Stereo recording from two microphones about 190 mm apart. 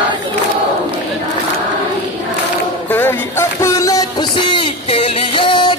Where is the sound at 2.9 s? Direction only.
10° left (ahead or behind).